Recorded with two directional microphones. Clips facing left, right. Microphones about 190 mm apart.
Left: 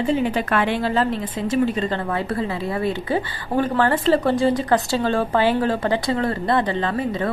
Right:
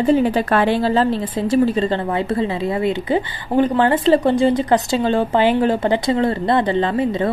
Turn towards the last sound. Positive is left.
turn(degrees=-25)  # may be behind; listen again after turning